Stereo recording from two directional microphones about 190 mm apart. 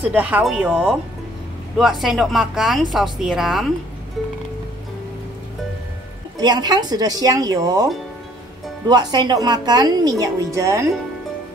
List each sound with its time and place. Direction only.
0.1 s speech: 10° right (ahead or behind)
6.3 s speech: 20° right (ahead or behind)